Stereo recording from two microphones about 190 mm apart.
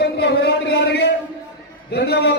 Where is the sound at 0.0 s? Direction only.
60° left (ahead or behind).